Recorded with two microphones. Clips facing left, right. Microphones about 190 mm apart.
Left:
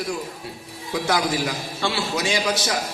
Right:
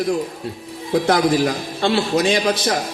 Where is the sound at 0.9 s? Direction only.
55° right (ahead or behind).